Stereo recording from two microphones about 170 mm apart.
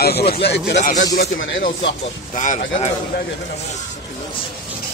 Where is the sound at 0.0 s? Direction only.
70° left (ahead or behind).